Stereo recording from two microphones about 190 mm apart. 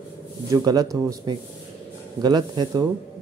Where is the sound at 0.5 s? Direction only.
20° right (ahead or behind).